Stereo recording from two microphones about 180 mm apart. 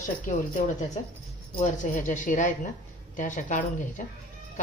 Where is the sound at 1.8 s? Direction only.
45° left (ahead or behind).